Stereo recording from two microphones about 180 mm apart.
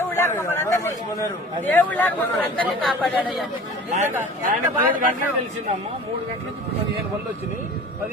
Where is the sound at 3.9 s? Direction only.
45° right (ahead or behind).